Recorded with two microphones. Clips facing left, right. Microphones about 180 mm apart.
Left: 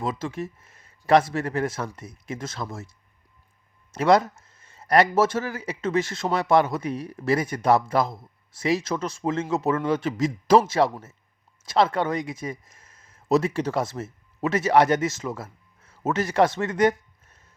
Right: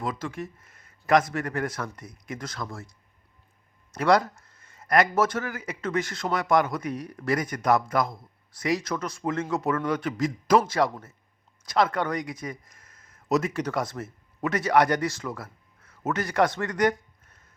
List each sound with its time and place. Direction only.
0.0 s speech: 25° left (ahead or behind)
3.9 s speech: 20° left (ahead or behind)